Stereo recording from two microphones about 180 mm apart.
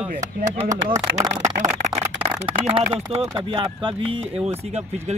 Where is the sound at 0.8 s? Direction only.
20° right (ahead or behind).